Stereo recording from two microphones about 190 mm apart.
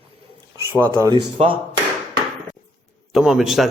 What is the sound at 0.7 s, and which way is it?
Speech, 10° right (ahead or behind).